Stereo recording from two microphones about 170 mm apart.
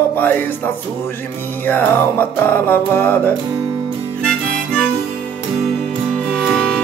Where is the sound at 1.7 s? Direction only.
10° left (ahead or behind).